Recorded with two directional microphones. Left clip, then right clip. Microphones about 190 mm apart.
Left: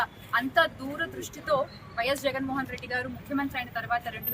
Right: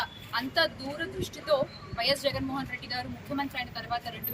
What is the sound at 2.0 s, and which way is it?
Speech, centre (ahead or behind).